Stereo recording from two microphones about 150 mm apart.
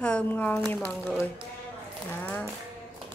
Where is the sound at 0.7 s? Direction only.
Centre (ahead or behind).